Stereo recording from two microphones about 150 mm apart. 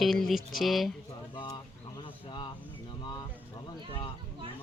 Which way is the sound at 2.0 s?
35° left (ahead or behind).